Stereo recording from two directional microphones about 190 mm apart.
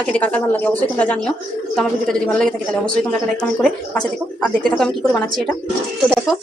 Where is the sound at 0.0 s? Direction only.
5° left (ahead or behind).